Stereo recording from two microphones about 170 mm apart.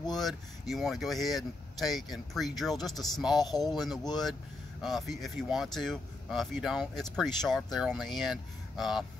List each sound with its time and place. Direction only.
0.1 s speech: centre (ahead or behind)